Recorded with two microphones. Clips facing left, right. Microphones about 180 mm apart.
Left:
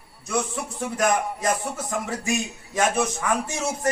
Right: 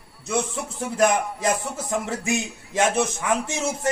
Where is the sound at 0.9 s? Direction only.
25° right (ahead or behind).